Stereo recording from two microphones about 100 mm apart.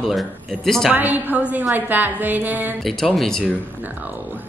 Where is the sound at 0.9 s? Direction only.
20° right (ahead or behind).